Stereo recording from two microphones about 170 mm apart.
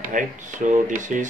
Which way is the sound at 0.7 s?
50° right (ahead or behind).